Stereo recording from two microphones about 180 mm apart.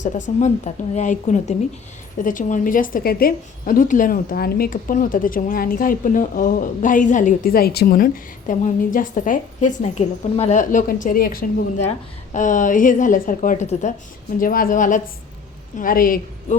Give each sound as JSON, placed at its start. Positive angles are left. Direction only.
{"t": 0.3, "sound": "a woman's voice", "side_deg": 40}
{"t": 11.9, "sound": "a woman's voice", "side_deg": 45}
{"t": 14.3, "sound": "a woman's voice", "side_deg": 50}